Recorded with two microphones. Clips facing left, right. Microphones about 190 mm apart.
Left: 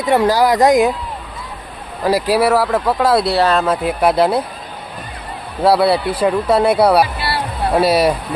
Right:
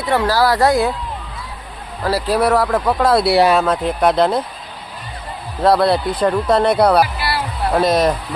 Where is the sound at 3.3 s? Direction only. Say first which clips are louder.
Right 2 dB; 10° right (ahead or behind).